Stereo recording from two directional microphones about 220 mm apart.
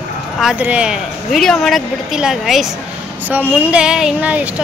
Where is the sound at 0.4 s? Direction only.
5° right (ahead or behind).